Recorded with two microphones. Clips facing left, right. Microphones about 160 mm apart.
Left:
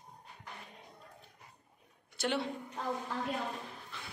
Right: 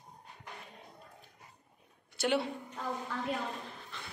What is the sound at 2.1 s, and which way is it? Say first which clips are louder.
Speech: right 3 dB; 5° right (ahead or behind).